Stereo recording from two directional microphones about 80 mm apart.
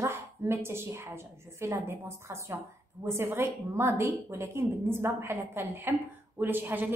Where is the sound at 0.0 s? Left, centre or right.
Right.